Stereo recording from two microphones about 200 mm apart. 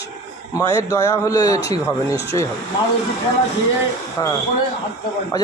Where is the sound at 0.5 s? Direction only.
15° left (ahead or behind).